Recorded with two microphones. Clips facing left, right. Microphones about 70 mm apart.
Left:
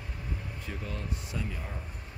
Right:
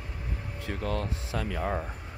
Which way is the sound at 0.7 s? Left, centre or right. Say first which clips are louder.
Right 8 dB; right.